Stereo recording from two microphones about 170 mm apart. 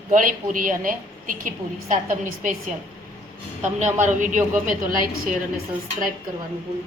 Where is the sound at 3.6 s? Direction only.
45° right (ahead or behind).